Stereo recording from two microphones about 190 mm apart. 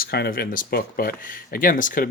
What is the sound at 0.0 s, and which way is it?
Speech, 55° left (ahead or behind).